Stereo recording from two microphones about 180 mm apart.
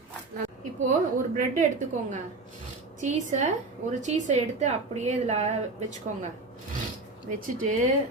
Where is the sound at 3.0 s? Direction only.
40° right (ahead or behind).